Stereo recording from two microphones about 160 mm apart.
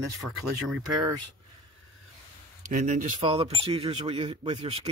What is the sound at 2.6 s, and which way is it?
Speech, 55° right (ahead or behind).